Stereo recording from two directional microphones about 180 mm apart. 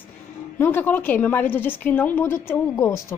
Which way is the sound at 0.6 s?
10° left (ahead or behind).